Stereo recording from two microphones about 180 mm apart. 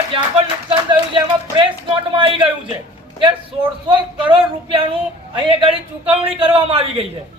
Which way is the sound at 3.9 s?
30° right (ahead or behind).